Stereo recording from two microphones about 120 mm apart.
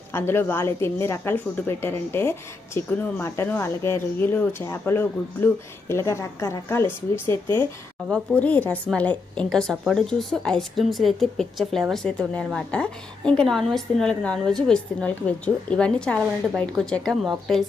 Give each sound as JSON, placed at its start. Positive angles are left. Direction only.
{"t": 0.1, "sound": "a woman's voice", "side_deg": 20}
{"t": 8.4, "sound": "a woman's voice", "side_deg": 10}